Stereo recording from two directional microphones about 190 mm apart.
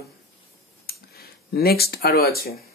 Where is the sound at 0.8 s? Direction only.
55° left (ahead or behind).